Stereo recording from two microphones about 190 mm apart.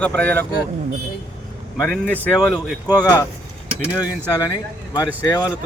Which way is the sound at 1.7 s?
10° left (ahead or behind).